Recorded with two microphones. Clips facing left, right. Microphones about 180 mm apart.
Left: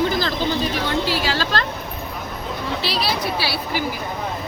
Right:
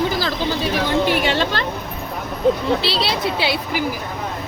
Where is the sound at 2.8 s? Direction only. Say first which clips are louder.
Right 2 dB; 25° right (ahead or behind).